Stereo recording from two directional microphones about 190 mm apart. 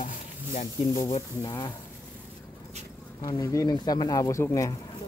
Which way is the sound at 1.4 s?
20° left (ahead or behind).